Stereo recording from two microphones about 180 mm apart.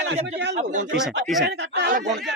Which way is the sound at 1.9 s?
40° right (ahead or behind).